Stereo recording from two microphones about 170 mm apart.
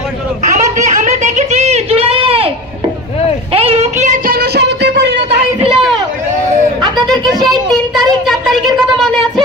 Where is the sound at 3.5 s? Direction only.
35° right (ahead or behind); by 5.1 s 90° right.